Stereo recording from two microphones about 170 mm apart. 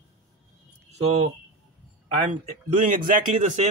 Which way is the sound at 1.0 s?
40° right (ahead or behind).